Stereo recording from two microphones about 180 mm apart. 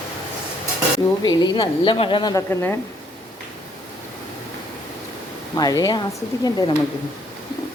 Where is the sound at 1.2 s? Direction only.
25° left (ahead or behind).